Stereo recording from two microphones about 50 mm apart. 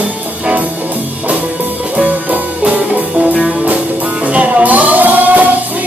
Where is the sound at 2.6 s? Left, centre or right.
Right.